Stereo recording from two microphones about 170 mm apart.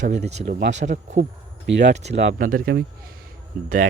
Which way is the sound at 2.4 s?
55° right (ahead or behind).